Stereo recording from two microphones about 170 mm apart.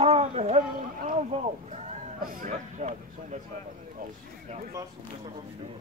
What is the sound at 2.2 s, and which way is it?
Speech, 50° right (ahead or behind).